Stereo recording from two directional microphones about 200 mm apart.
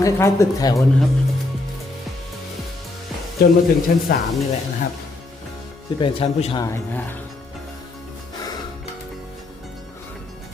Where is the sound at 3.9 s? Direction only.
50° left (ahead or behind).